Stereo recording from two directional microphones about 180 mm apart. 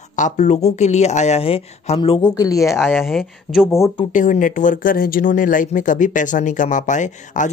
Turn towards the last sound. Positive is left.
turn(degrees=45)  # may be behind; listen again after turning